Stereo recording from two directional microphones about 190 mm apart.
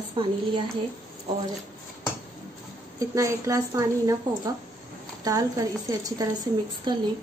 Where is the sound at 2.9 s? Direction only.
15° right (ahead or behind).